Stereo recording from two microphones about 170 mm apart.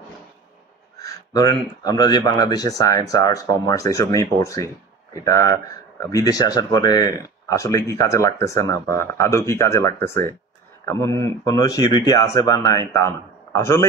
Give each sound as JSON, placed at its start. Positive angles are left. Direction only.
{"t": 1.0, "sound": "speech", "side_deg": 25}